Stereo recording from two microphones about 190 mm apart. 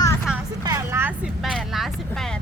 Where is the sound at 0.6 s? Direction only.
15° right (ahead or behind); by 2.4 s centre (ahead or behind).